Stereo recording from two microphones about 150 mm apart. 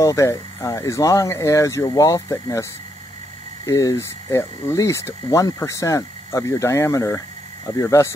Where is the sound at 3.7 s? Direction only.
20° left (ahead or behind).